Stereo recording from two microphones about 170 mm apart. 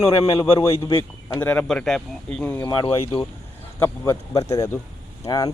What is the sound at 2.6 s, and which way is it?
Speech, 25° left (ahead or behind).